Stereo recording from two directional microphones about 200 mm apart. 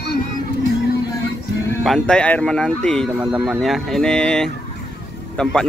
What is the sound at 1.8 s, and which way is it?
Speech, 5° left (ahead or behind).